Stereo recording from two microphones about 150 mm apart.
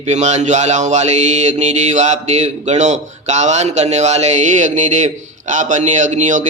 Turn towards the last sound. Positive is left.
turn(degrees=-55)  # may be behind; listen again after turning